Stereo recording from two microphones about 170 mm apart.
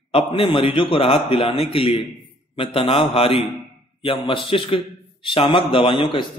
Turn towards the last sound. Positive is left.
turn(degrees=25)  # may be behind; listen again after turning